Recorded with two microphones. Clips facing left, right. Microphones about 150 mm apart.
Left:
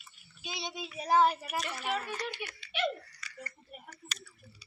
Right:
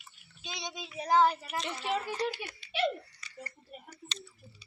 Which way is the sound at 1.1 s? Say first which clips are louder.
Even; 15° left (ahead or behind).